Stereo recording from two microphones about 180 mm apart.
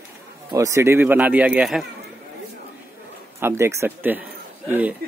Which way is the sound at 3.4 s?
15° right (ahead or behind).